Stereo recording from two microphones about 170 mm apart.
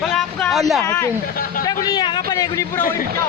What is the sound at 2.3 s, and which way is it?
Speech, 20° left (ahead or behind).